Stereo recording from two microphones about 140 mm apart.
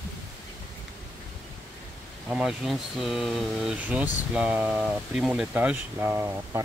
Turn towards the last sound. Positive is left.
turn(degrees=-20)  # may be behind; listen again after turning